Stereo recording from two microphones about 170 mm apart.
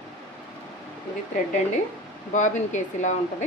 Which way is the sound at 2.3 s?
45° left (ahead or behind).